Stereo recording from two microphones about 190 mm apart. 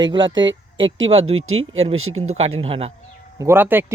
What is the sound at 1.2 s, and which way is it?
Speech, 90° right.